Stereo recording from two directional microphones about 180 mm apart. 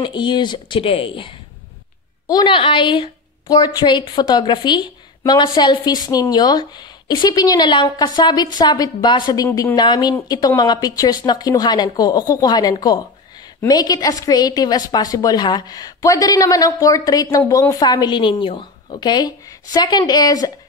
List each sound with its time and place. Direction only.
0.0 s a woman's voice: 25° left (ahead or behind)